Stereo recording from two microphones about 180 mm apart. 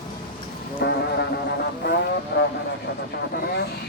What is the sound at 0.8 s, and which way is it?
Music, 70° left (ahead or behind).